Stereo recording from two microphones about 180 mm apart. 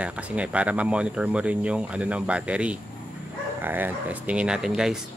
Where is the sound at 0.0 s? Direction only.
5° right (ahead or behind).